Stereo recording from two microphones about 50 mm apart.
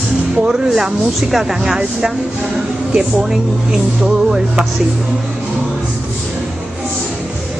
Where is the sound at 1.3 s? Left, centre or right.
Centre.